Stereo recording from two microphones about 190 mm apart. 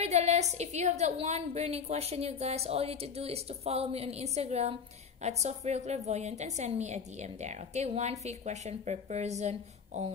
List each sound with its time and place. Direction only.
0.0 s a woman's voice: 35° right (ahead or behind)